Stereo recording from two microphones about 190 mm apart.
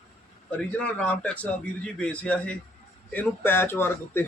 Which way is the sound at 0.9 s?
5° left (ahead or behind).